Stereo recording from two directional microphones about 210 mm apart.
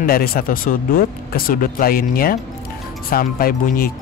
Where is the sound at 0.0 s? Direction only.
45° left (ahead or behind).